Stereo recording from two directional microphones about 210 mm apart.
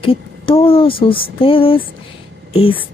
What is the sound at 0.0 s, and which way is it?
Speech, 25° left (ahead or behind).